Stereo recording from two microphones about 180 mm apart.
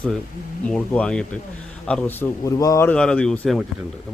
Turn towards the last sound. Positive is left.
turn(degrees=5)  # may be behind; listen again after turning